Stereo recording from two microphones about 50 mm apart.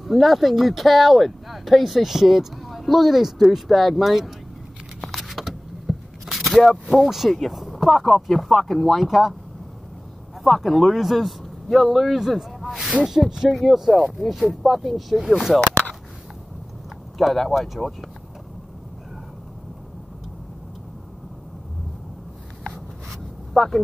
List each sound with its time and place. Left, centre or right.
0.0 s speech: centre
5.0 s a sound: centre
7.3 s speech: centre
10.4 s a man's voice: centre
17.2 s speech: centre
22.7 s a sound: centre